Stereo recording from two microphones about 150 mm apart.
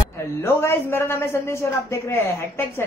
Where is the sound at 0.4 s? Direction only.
15° left (ahead or behind).